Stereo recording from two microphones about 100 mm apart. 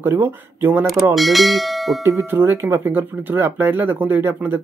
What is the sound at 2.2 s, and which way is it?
Speech, 25° right (ahead or behind).